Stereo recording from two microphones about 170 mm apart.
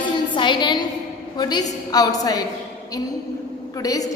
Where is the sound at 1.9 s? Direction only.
20° left (ahead or behind).